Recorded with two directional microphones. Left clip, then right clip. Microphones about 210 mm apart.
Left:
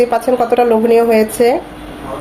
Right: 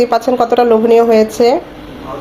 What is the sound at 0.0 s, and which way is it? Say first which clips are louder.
A woman's voice: right 1 dB; 20° right (ahead or behind).